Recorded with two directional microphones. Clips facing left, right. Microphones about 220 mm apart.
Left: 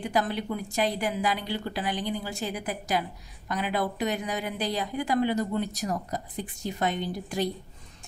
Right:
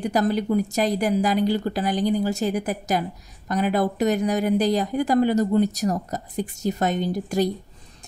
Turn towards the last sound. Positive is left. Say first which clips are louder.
# right 7 dB
turn(degrees=-40)  # may be behind; listen again after turning